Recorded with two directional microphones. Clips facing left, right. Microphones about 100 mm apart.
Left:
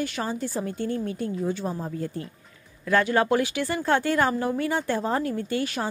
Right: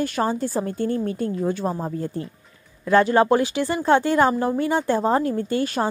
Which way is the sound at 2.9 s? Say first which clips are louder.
Right 5 dB; 30° right (ahead or behind).